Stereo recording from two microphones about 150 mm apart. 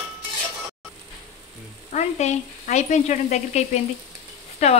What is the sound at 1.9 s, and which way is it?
Speech, 50° left (ahead or behind).